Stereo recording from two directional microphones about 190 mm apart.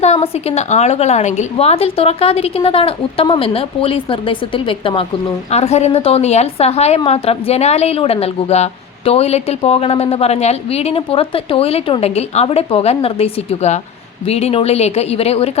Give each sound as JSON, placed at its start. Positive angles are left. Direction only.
{"t": 0.0, "sound": "a woman's voice", "side_deg": 35}